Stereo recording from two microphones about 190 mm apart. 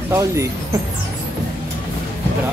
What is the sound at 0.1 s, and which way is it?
Speech, 15° right (ahead or behind).